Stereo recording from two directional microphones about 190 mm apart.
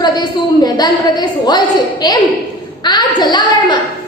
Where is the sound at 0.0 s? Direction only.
20° left (ahead or behind).